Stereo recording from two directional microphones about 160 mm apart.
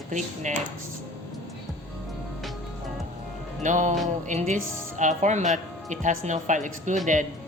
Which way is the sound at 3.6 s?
50° right (ahead or behind).